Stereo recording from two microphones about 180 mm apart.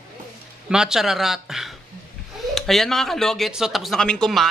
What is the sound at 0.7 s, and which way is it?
A man's voice, 5° right (ahead or behind).